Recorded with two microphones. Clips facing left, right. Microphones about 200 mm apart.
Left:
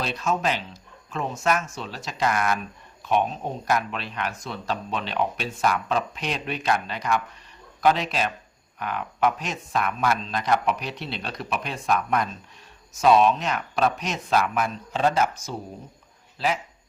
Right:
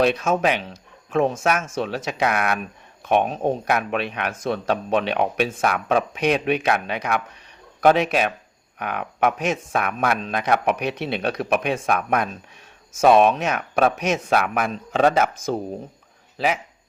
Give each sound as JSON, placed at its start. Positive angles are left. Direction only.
{"t": 0.0, "sound": "speech", "side_deg": -60}
{"t": 1.1, "sound": "speech", "side_deg": -75}
{"t": 1.7, "sound": "speech", "side_deg": -60}